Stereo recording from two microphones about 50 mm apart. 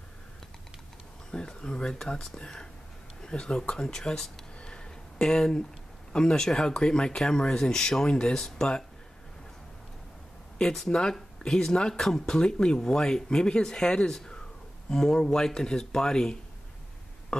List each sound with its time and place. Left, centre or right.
1.3 s speech: centre
10.6 s speech: centre
17.3 s burping: centre